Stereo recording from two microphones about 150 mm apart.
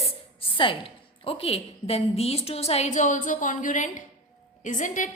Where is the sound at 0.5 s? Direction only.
35° left (ahead or behind).